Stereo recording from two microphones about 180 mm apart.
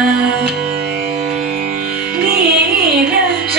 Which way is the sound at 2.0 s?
60° right (ahead or behind).